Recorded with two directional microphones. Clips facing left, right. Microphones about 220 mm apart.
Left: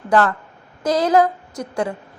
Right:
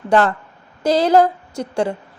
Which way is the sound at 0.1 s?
30° right (ahead or behind).